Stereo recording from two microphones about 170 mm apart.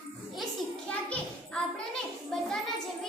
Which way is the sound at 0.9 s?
5° left (ahead or behind).